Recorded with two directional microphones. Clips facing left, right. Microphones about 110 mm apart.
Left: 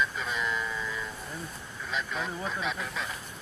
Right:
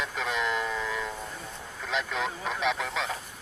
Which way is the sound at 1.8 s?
90° right.